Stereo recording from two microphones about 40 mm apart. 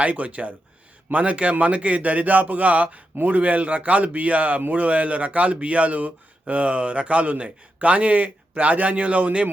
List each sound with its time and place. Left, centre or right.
0.0 s a man's voice: right